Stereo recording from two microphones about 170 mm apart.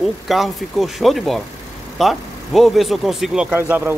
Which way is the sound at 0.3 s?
Centre (ahead or behind).